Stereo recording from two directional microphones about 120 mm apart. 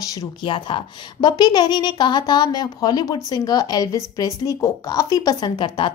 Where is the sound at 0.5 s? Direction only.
45° left (ahead or behind).